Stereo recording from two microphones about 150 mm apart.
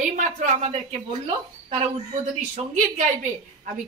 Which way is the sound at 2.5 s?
55° right (ahead or behind).